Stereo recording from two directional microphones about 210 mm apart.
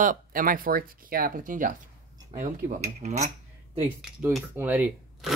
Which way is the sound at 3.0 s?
30° right (ahead or behind).